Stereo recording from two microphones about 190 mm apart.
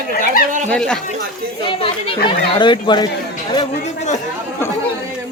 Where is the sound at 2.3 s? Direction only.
25° left (ahead or behind).